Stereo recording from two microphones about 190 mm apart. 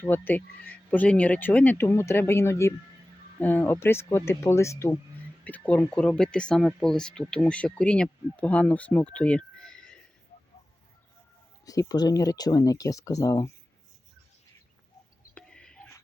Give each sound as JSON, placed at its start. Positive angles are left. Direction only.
{"t": 0.0, "sound": "speech", "side_deg": 10}
{"t": 11.6, "sound": "speech", "side_deg": 20}
{"t": 15.4, "sound": "a sound", "side_deg": 5}